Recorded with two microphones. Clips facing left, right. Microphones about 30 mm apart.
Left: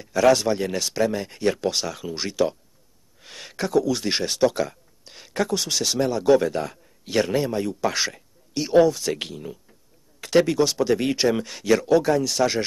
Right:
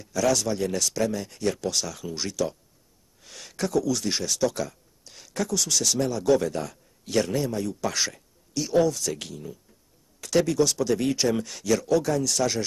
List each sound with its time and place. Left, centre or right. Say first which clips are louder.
0.0 s speech: left 6 dB; left